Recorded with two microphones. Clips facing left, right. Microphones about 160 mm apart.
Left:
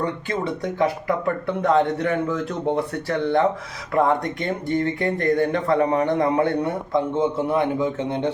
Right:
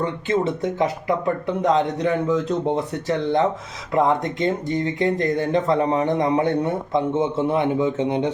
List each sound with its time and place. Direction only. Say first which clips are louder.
0.0 s speech: right 3 dB; 25° right (ahead or behind)